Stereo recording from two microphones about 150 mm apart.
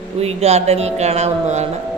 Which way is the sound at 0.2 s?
45° right (ahead or behind).